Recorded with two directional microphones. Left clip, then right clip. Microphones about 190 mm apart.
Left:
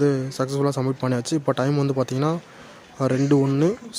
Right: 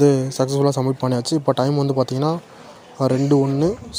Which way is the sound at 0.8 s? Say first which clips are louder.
Right 3 dB; 5° left (ahead or behind).